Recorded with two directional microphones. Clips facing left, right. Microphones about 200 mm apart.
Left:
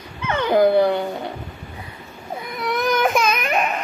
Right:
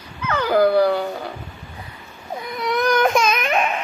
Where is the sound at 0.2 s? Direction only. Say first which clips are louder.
Left 1 dB; 25° left (ahead or behind).